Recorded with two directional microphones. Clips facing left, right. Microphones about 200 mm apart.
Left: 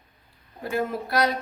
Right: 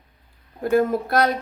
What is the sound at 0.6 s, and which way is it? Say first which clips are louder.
Speech: right 8 dB; 50° right (ahead or behind).